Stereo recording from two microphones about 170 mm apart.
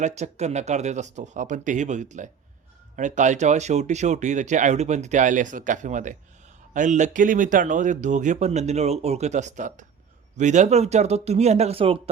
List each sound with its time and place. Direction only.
0.0 s speech: 40° right (ahead or behind)